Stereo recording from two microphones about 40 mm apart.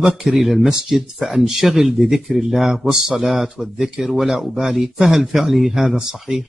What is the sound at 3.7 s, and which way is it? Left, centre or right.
A man's voice, centre.